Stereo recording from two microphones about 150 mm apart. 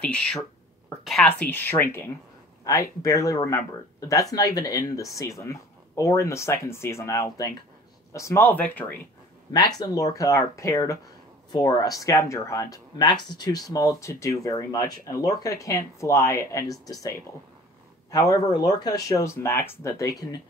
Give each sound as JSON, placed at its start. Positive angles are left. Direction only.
{"t": 0.0, "sound": "speech", "side_deg": 5}
{"t": 9.5, "sound": "speech", "side_deg": 25}
{"t": 18.1, "sound": "speech", "side_deg": 25}